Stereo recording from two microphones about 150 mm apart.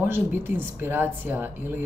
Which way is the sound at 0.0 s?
15° right (ahead or behind).